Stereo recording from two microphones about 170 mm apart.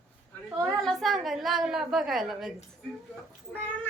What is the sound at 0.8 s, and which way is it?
A woman's voice, centre (ahead or behind).